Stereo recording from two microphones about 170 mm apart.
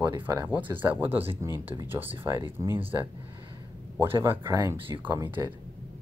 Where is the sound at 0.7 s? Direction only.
10° right (ahead or behind).